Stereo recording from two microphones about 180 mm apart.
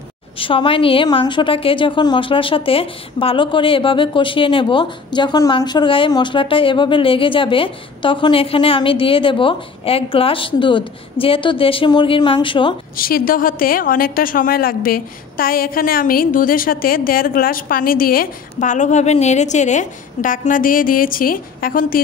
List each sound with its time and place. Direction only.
0.4 s a woman's voice: 30° left (ahead or behind)
12.9 s a woman's voice: 55° left (ahead or behind)